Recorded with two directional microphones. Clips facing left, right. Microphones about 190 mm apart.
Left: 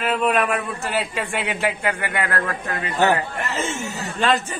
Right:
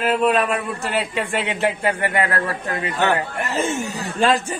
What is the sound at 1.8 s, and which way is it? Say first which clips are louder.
Speech: right 4 dB; 35° right (ahead or behind).